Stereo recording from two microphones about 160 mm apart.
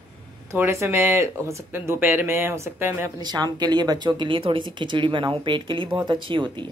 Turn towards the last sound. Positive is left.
turn(degrees=-30)  # may be behind; listen again after turning